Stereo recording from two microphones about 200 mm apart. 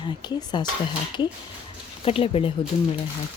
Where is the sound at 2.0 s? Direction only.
30° left (ahead or behind).